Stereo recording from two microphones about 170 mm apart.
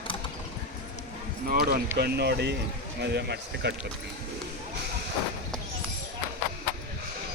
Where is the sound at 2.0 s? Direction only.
75° right (ahead or behind).